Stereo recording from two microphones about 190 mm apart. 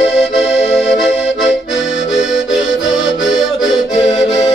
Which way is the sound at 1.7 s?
70° left (ahead or behind).